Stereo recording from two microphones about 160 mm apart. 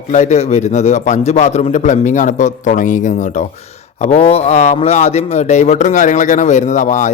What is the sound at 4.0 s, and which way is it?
A man's voice, 45° left (ahead or behind).